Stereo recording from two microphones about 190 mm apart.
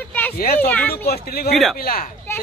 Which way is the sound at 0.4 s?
50° left (ahead or behind).